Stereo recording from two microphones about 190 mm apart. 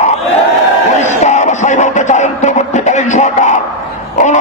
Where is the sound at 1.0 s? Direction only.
40° left (ahead or behind).